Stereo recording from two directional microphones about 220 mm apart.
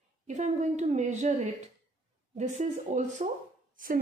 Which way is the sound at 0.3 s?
30° right (ahead or behind).